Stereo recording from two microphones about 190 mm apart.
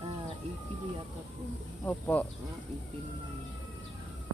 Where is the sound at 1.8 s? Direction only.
10° left (ahead or behind).